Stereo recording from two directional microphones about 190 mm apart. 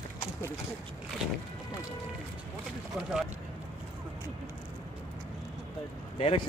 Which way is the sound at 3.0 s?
5° right (ahead or behind).